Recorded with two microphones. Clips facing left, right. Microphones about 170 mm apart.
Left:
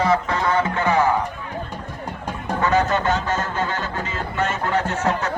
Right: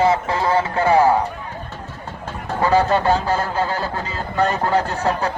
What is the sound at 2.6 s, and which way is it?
Speech, 35° right (ahead or behind).